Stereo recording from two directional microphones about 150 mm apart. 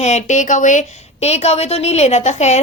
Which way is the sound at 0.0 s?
55° left (ahead or behind).